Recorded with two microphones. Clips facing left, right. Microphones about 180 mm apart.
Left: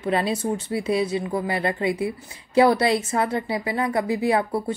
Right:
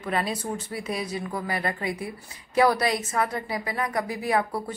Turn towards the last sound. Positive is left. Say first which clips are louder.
# left 4 dB
turn(degrees=25)  # may be behind; listen again after turning